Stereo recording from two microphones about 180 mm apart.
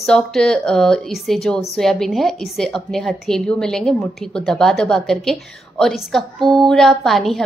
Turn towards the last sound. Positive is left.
turn(degrees=0)  # may be behind; listen again after turning